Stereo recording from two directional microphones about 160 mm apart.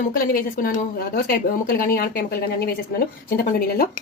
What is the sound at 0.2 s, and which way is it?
Speech, 65° left (ahead or behind).